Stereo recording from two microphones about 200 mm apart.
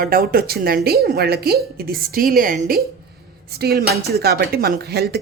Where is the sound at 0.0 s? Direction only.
45° right (ahead or behind).